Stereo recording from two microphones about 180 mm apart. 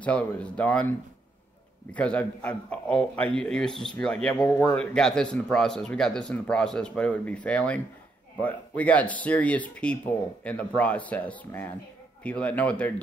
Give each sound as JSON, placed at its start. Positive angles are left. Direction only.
{"t": 0.0, "sound": "speech", "side_deg": 5}
{"t": 2.0, "sound": "speech", "side_deg": 5}
{"t": 4.4, "sound": "a man's voice", "side_deg": 20}
{"t": 4.7, "sound": "speech", "side_deg": 5}